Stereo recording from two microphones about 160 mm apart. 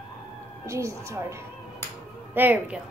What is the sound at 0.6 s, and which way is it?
Speech, 20° right (ahead or behind).